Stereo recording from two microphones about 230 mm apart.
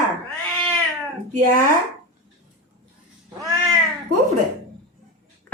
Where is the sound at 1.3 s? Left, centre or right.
Right.